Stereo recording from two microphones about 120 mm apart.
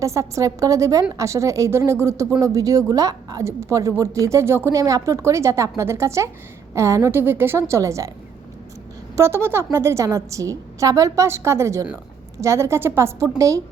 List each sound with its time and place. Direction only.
0.0 s a woman's voice: 25° right (ahead or behind)
9.1 s a woman's voice: 20° right (ahead or behind)